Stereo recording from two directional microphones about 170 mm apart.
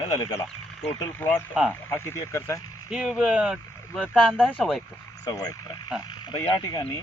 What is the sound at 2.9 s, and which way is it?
Speech, 5° right (ahead or behind).